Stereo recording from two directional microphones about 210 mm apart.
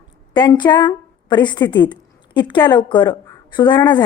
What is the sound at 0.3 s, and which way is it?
A woman's voice, 20° left (ahead or behind).